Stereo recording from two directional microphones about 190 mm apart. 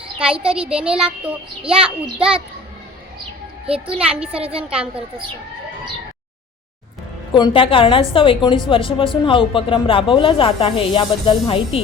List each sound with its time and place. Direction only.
0.2 s speech: 5° right (ahead or behind)
3.9 s speech: 5° right (ahead or behind)
4.4 s a woman's voice: 30° right (ahead or behind)
7.3 s a woman's voice: 25° left (ahead or behind)